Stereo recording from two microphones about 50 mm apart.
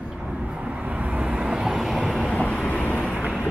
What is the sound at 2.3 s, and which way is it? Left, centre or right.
Vehicle, left.